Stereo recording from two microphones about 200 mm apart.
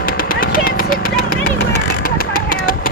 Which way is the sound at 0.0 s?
45° left (ahead or behind).